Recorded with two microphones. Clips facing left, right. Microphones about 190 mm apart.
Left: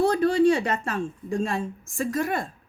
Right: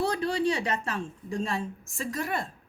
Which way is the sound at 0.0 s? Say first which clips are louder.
Left 7 dB; 50° left (ahead or behind).